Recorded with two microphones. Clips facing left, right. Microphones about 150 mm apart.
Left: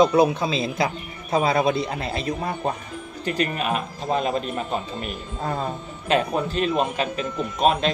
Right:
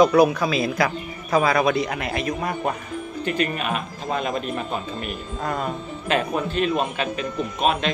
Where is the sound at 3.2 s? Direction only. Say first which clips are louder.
Left 1 dB; 40° left (ahead or behind).